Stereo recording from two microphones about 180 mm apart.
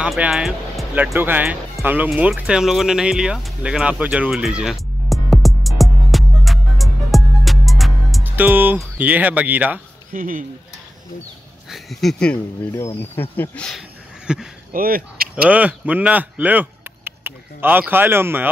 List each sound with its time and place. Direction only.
0.0 s speech: 5° right (ahead or behind)
1.1 s music: 10° right (ahead or behind)
8.2 s speech: 10° right (ahead or behind)
10.1 s speech: 50° right (ahead or behind)
11.7 s speech: centre (ahead or behind)
14.7 s speech: 55° right (ahead or behind)
15.4 s speech: 10° right (ahead or behind)